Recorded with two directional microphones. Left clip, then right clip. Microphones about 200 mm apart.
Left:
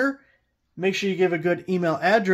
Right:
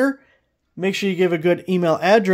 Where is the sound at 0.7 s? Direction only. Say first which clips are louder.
Right 2 dB; 45° right (ahead or behind).